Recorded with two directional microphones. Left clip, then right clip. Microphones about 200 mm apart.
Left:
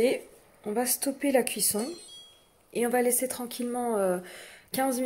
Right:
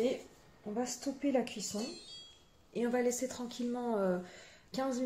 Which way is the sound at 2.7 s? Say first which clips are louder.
Left 7 dB; 45° left (ahead or behind).